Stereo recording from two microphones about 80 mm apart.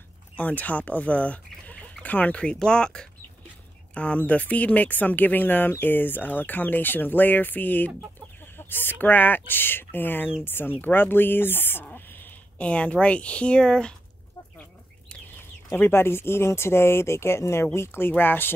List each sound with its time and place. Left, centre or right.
0.4 s speech: centre
15.7 s speech: left